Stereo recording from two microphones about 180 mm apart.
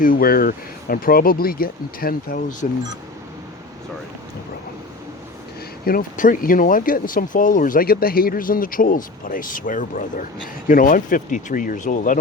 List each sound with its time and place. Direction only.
0.0 s speech: 50° left (ahead or behind)
5.8 s speech: 55° left (ahead or behind)